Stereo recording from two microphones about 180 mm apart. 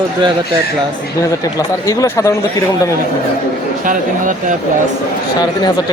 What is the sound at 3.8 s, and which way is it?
Speech, 45° right (ahead or behind).